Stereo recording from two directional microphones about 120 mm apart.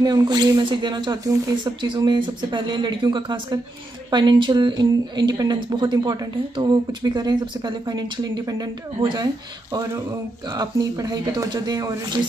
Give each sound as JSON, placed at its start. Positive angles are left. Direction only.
{"t": 0.0, "sound": "speech", "side_deg": -35}